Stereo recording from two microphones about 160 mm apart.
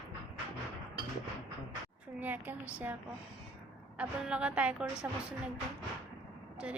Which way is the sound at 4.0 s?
5° right (ahead or behind).